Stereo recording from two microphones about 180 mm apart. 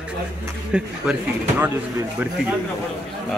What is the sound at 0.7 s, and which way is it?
Speech, 5° right (ahead or behind).